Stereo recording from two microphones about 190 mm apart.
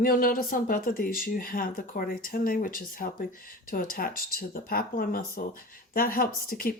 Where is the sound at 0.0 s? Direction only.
50° left (ahead or behind).